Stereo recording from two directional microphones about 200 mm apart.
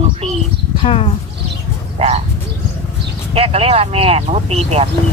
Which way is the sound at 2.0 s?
30° right (ahead or behind).